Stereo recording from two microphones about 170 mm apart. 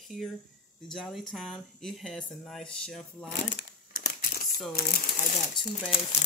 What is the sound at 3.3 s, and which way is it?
Crumpling, 90° left.